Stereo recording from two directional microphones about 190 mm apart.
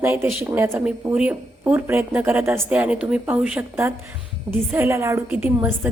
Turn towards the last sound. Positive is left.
turn(degrees=-10)  # may be behind; listen again after turning